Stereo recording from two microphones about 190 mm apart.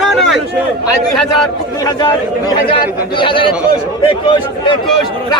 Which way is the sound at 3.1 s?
25° left (ahead or behind).